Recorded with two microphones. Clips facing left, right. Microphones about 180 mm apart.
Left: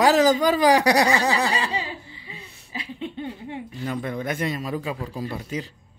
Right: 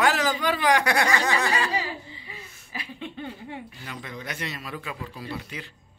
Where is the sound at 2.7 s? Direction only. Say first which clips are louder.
Left 4 dB; 25° left (ahead or behind).